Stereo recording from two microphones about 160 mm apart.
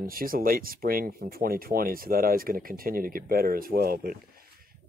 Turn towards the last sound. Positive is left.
turn(degrees=-65)  # may be behind; listen again after turning